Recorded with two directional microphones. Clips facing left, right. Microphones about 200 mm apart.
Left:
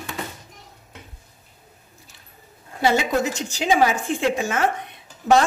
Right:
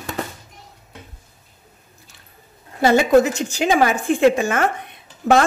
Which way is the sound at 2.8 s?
55° right (ahead or behind).